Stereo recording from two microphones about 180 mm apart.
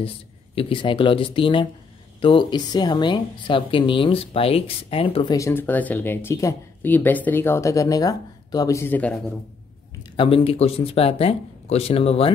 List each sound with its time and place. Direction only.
0.6 s speech: 30° left (ahead or behind); by 9.2 s 10° left (ahead or behind)
10.1 s speech: 30° left (ahead or behind)